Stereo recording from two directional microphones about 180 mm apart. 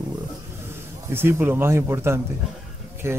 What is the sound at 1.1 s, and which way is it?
Speech, 10° right (ahead or behind).